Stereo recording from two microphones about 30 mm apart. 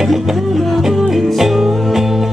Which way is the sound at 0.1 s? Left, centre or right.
Centre.